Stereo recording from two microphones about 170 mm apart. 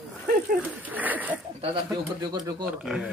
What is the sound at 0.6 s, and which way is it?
Speech, 10° right (ahead or behind).